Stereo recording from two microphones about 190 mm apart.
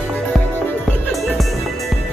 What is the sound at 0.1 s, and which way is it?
Music, 10° left (ahead or behind).